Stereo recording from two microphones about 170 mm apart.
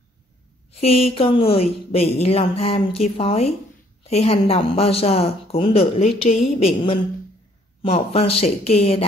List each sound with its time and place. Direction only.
0.7 s speech: 35° left (ahead or behind)